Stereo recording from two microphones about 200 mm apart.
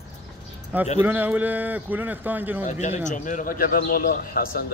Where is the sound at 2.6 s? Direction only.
35° left (ahead or behind).